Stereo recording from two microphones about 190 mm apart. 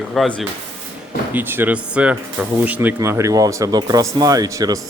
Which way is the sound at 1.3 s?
10° right (ahead or behind).